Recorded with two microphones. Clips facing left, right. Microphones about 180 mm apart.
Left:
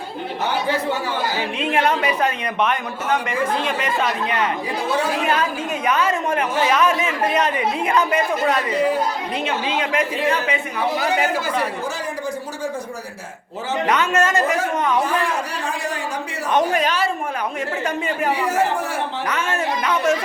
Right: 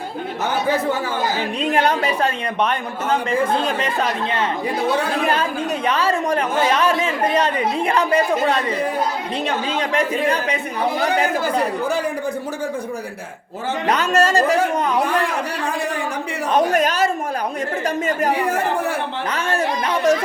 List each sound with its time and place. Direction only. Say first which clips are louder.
1.4 s speech: right 2 dB; 40° right (ahead or behind)
5.2 s speech: right 1 dB; 30° right (ahead or behind)
13.8 s speech: right 2 dB; 35° right (ahead or behind)
16.7 s speech: right 2 dB; 45° right (ahead or behind)
19.3 s speech: right 3 dB; 35° right (ahead or behind)